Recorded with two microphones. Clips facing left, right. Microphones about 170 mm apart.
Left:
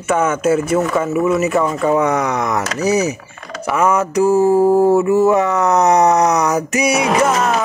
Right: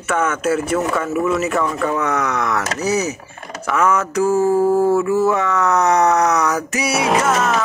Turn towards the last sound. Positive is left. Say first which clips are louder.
# left 2 dB
turn(degrees=0)  # may be behind; listen again after turning